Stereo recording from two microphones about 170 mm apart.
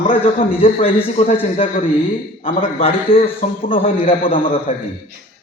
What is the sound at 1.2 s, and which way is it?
Speech, 40° left (ahead or behind).